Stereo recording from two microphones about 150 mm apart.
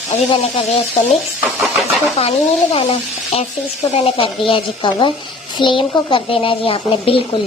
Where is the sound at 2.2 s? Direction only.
45° left (ahead or behind).